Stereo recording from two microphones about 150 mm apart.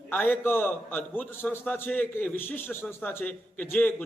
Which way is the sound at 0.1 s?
10° left (ahead or behind).